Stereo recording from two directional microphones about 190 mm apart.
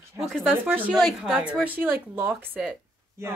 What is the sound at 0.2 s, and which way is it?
Speech, 15° right (ahead or behind).